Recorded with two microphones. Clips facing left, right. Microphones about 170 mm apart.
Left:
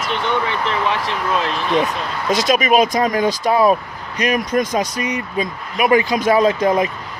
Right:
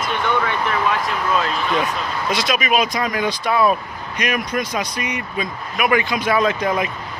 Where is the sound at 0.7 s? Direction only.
30° left (ahead or behind).